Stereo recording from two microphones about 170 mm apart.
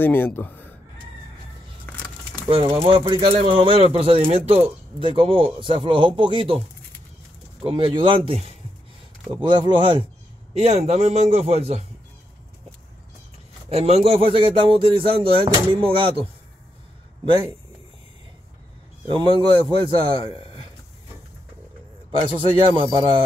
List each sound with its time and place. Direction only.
0.0 s a man's voice: 10° left (ahead or behind)
1.9 s a sound: 10° left (ahead or behind)
2.5 s speech: 35° right (ahead or behind)
7.6 s speech: 30° right (ahead or behind)
13.7 s speech: 35° right (ahead or behind)
19.0 s speech: 25° right (ahead or behind)
19.3 s a man's voice: 30° left (ahead or behind)
20.2 s a sound: 35° left (ahead or behind)
22.2 s speech: 30° right (ahead or behind)